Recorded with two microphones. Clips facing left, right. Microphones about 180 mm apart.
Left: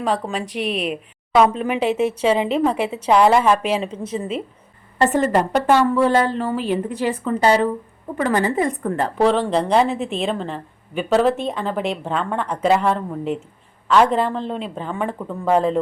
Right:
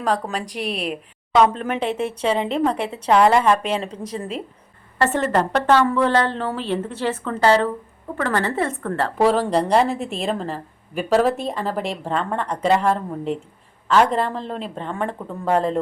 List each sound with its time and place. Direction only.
0.3 s speech: 40° right (ahead or behind)
1.4 s a woman's voice: 5° left (ahead or behind)
9.1 s a woman's voice: 5° right (ahead or behind)